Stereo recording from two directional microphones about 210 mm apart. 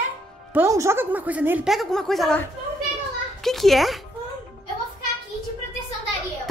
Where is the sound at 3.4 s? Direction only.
Centre (ahead or behind).